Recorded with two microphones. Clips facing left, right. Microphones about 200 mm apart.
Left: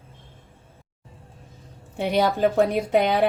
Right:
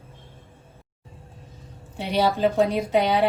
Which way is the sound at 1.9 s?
50° left (ahead or behind).